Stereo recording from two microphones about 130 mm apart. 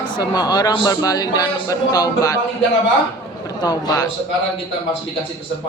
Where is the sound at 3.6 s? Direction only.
30° left (ahead or behind).